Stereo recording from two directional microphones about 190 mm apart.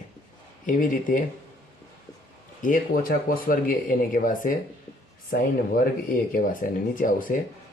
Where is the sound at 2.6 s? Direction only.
45° left (ahead or behind).